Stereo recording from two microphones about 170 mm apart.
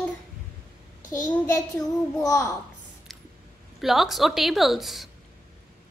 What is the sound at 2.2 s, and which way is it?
Speech, 20° left (ahead or behind).